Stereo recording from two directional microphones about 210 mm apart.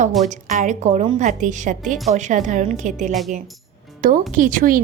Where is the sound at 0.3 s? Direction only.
40° right (ahead or behind).